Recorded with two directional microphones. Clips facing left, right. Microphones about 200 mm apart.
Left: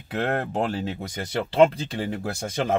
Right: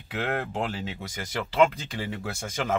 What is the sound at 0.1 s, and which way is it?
Speech, 40° left (ahead or behind).